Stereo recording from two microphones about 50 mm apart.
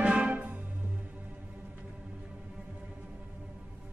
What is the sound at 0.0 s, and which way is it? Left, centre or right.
Music, centre.